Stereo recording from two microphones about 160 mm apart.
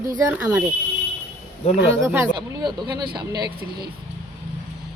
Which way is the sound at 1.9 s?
15° right (ahead or behind).